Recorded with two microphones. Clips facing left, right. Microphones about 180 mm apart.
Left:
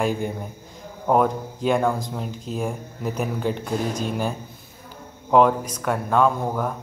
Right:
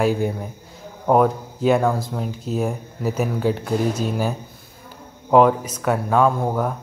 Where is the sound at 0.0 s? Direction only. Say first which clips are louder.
Right 4 dB; 5° right (ahead or behind).